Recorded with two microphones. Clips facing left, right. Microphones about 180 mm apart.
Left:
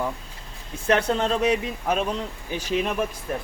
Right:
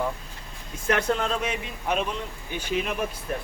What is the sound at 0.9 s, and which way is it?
Speech, 35° left (ahead or behind).